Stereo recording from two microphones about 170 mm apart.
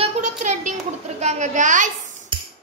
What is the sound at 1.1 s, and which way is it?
Speech, 45° right (ahead or behind).